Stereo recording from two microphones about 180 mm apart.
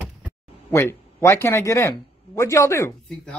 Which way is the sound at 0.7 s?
15° left (ahead or behind).